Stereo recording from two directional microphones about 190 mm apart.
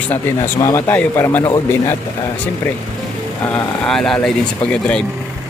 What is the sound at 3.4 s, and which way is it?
Speech, 10° left (ahead or behind).